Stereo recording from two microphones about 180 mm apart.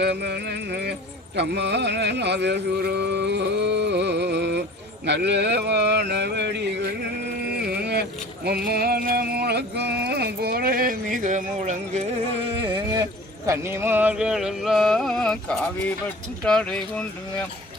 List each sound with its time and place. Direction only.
0.0 s speech: 70° right (ahead or behind)
7.5 s carnatic music: 65° right (ahead or behind)
8.4 s speech: 60° right (ahead or behind); by 17.4 s 5° left (ahead or behind)